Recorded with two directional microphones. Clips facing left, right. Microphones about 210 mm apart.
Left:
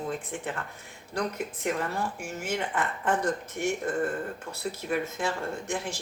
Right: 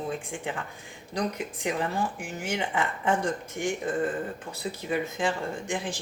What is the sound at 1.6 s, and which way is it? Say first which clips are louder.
Speech: right 2 dB; 15° right (ahead or behind).